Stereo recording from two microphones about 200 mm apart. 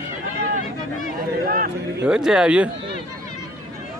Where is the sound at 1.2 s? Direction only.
45° right (ahead or behind).